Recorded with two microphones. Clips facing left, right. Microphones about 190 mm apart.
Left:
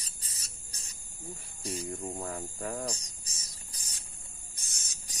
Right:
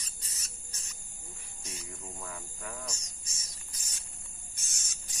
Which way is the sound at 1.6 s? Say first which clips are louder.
Left 10 dB; 35° left (ahead or behind).